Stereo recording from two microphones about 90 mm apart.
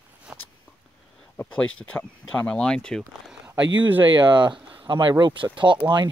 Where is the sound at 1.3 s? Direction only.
15° left (ahead or behind).